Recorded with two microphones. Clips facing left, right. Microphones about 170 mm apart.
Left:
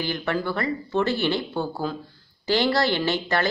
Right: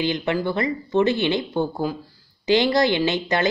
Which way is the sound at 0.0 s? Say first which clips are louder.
Right 4 dB; 20° right (ahead or behind).